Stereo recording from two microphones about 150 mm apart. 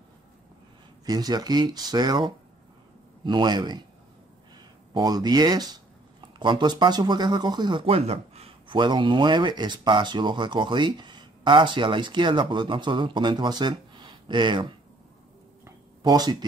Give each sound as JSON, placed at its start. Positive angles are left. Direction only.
{"t": 1.0, "sound": "speech", "side_deg": -25}
{"t": 4.9, "sound": "speech", "side_deg": -25}
{"t": 15.6, "sound": "a sound", "side_deg": -25}